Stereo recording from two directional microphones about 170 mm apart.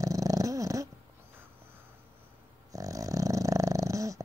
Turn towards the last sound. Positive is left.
turn(degrees=-20)  # may be behind; listen again after turning